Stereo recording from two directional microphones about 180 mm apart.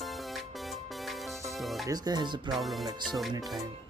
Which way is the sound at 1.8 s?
20° right (ahead or behind).